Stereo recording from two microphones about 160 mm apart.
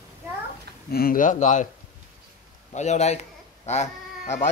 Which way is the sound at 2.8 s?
45° left (ahead or behind).